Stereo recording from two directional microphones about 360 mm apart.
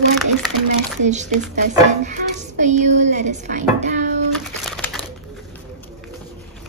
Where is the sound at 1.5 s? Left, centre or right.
Centre.